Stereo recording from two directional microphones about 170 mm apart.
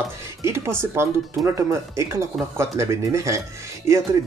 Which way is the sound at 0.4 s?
15° right (ahead or behind).